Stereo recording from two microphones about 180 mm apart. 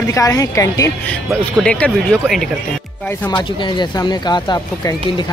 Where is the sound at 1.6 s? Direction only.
5° left (ahead or behind).